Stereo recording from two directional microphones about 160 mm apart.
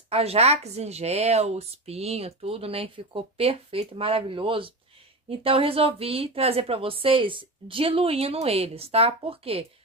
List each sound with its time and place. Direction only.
0.1 s a woman's voice: 40° right (ahead or behind)